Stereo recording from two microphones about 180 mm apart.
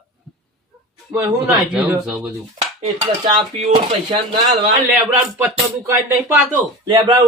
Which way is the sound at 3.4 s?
30° right (ahead or behind).